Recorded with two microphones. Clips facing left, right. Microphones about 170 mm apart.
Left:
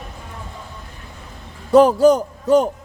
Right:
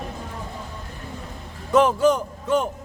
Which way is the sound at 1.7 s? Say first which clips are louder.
Left 6 dB; 35° left (ahead or behind).